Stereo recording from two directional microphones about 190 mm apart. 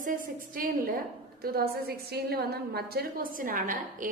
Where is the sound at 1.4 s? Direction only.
50° right (ahead or behind).